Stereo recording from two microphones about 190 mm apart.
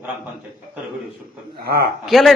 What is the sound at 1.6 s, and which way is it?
Speech, 55° right (ahead or behind).